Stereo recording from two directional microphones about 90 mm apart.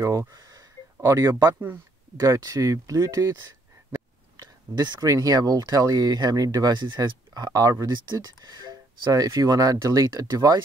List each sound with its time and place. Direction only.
0.0 s speech: 35° right (ahead or behind)
0.3 s a sound: 45° right (ahead or behind)
0.9 s speech: 35° right (ahead or behind)